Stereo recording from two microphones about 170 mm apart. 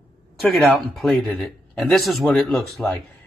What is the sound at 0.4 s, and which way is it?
A man's voice, centre (ahead or behind).